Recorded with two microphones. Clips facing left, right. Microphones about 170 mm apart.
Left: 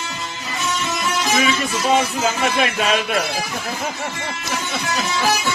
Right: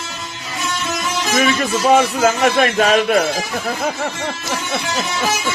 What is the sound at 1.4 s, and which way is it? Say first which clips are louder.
Speech: right 4 dB; 50° right (ahead or behind).